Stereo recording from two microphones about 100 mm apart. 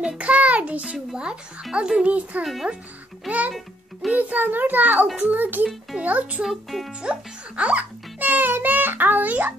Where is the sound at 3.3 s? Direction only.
15° right (ahead or behind).